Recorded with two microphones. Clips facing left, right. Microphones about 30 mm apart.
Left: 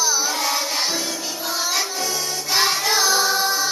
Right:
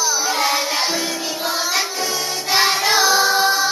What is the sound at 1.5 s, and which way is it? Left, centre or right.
Music, centre.